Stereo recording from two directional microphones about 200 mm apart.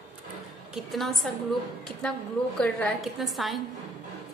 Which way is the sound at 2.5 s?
5° left (ahead or behind).